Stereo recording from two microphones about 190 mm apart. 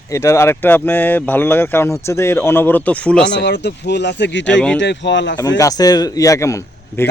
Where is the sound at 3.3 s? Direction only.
65° left (ahead or behind).